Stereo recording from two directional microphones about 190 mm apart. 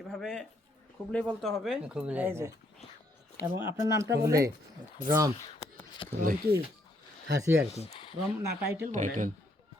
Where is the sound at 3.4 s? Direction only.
55° left (ahead or behind).